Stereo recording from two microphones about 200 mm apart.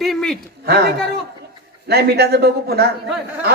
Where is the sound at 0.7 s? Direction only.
55° right (ahead or behind).